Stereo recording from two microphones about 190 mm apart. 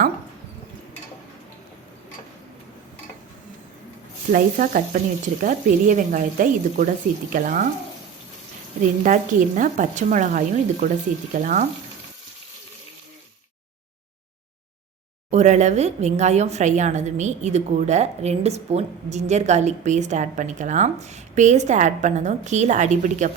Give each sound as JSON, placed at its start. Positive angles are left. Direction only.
{"t": 4.3, "sound": "speech", "side_deg": -45}
{"t": 8.8, "sound": "speech", "side_deg": -45}
{"t": 15.3, "sound": "speech", "side_deg": -35}